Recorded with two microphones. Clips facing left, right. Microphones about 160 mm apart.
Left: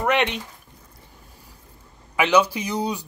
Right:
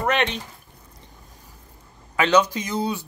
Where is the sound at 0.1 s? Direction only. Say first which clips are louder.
Left 2 dB; 15° left (ahead or behind).